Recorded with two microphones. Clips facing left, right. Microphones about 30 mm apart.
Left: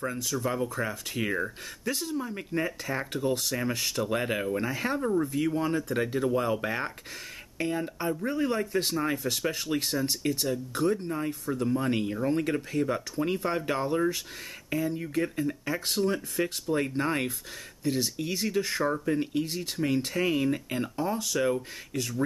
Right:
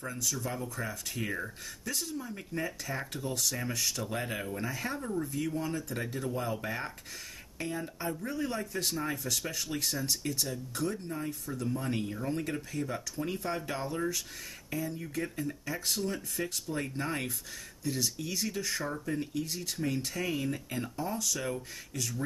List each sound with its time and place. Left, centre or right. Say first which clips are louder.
0.0 s speech: left 5 dB; left